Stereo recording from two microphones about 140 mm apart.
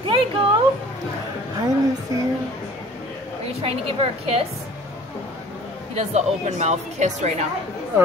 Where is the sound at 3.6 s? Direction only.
40° right (ahead or behind).